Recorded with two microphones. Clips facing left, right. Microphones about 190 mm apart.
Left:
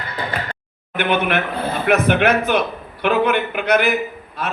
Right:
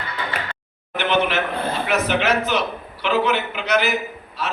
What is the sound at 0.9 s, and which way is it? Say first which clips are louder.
A man's voice: left 1 dB; 55° left (ahead or behind).